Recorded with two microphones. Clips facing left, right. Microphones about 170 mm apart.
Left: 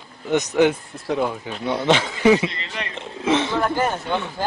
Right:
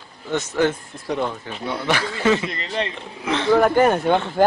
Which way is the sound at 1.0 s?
5° left (ahead or behind).